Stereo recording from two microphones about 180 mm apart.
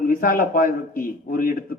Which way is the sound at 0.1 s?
55° left (ahead or behind).